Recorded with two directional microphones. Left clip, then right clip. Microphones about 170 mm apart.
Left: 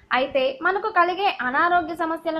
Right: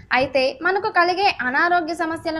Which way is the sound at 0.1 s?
15° right (ahead or behind).